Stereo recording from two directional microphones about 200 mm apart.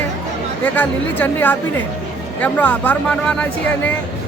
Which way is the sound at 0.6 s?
10° left (ahead or behind).